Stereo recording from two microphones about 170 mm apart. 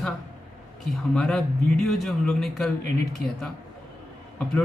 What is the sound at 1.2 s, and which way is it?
Speech, 5° left (ahead or behind).